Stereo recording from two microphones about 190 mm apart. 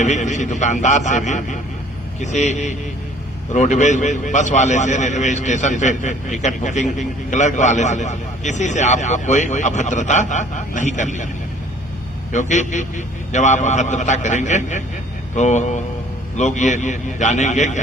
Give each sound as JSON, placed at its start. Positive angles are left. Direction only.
{"t": 0.0, "sound": "a man's voice", "side_deg": 40}
{"t": 12.3, "sound": "a man's voice", "side_deg": 40}